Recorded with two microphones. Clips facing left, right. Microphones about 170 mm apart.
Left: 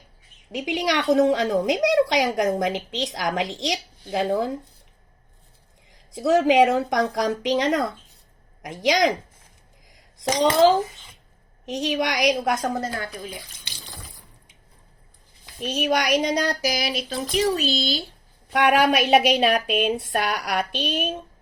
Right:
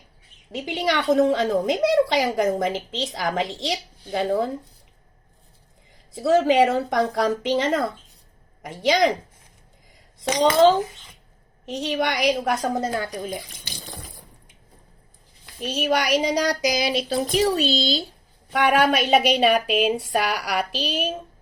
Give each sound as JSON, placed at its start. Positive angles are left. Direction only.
{"t": 0.5, "sound": "a woman's voice", "side_deg": 0}
{"t": 5.9, "sound": "a woman's voice", "side_deg": 0}
{"t": 11.6, "sound": "a woman's voice", "side_deg": 0}
{"t": 12.7, "sound": "a child's voice", "side_deg": -25}
{"t": 13.1, "sound": "speech", "side_deg": -45}
{"t": 15.6, "sound": "a sound", "side_deg": 0}
{"t": 17.1, "sound": "a child's voice", "side_deg": -35}
{"t": 17.6, "sound": "a child's voice", "side_deg": -25}
{"t": 18.5, "sound": "a woman's voice", "side_deg": 0}